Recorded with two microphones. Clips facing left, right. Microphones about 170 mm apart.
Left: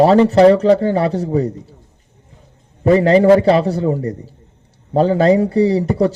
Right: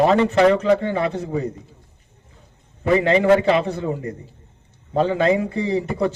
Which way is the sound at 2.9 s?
35° left (ahead or behind).